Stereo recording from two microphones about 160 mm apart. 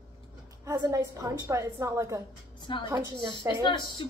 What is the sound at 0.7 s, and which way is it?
A woman's voice, 20° right (ahead or behind).